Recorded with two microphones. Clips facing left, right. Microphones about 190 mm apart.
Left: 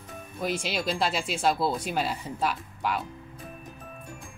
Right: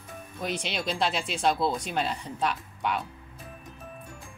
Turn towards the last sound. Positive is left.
turn(degrees=5)  # may be behind; listen again after turning